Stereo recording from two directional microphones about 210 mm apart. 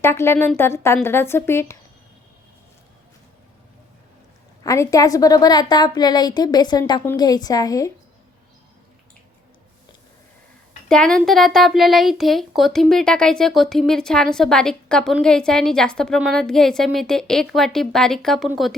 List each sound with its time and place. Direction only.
0.0 s a woman's voice: 10° left (ahead or behind)
4.6 s a woman's voice: 15° left (ahead or behind)
10.8 s speech: 5° left (ahead or behind)